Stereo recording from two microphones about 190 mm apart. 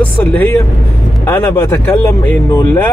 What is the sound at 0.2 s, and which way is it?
Speech, 10° left (ahead or behind).